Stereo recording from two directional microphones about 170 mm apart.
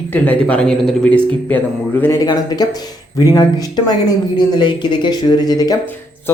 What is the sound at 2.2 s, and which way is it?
Speech, 25° left (ahead or behind).